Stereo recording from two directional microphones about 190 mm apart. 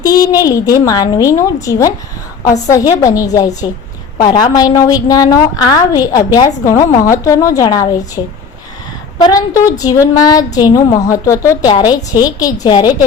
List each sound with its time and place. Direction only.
0.0 s a woman's voice: 20° left (ahead or behind)
9.2 s a woman's voice: 20° left (ahead or behind)